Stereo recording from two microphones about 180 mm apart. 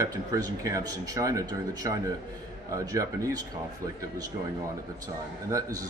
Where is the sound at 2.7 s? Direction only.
20° right (ahead or behind).